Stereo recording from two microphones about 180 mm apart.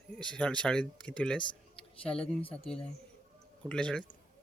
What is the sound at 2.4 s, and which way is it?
Speech, 30° left (ahead or behind).